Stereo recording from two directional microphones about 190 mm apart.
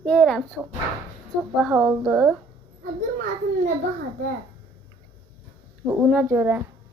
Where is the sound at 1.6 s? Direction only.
10° right (ahead or behind).